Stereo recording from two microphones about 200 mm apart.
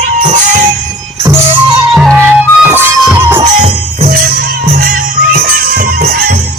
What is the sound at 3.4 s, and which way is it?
Music, 30° right (ahead or behind).